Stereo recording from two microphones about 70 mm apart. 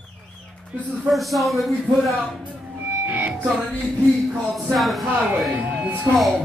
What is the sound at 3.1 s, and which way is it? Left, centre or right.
Music, right.